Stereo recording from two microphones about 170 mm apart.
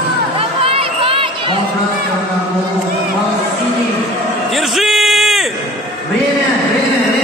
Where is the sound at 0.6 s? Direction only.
35° right (ahead or behind).